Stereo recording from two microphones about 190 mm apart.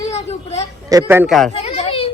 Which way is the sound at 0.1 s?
35° left (ahead or behind).